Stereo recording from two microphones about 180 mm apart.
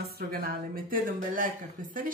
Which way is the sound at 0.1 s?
55° right (ahead or behind).